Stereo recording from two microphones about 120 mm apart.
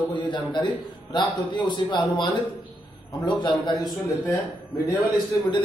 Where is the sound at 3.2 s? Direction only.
40° left (ahead or behind).